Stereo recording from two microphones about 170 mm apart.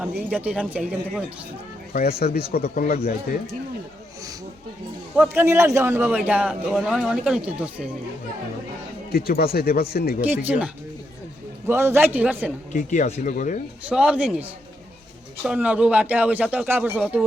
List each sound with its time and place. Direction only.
0.0 s a man's voice: 10° right (ahead or behind)
1.9 s speech: 60° left (ahead or behind)
5.1 s a man's voice: 10° right (ahead or behind)
9.1 s speech: 65° left (ahead or behind)
10.2 s a man's voice: 10° right (ahead or behind)
12.7 s speech: 45° left (ahead or behind)
13.8 s a man's voice: 5° right (ahead or behind)